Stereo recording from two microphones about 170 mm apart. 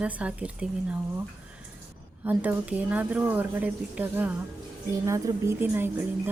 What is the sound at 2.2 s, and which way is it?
A woman's voice, 10° right (ahead or behind).